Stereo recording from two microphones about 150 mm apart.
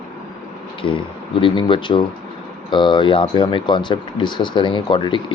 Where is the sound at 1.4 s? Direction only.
35° left (ahead or behind).